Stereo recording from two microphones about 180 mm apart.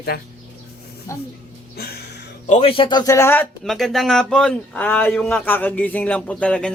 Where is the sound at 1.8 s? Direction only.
60° left (ahead or behind).